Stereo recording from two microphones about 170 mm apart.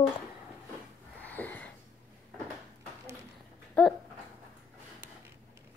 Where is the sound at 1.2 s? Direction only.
10° left (ahead or behind).